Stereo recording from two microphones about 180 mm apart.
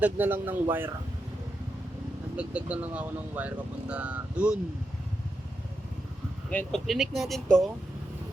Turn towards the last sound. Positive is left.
turn(degrees=0)  # may be behind; listen again after turning